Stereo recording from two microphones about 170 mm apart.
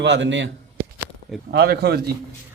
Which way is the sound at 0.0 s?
90° right.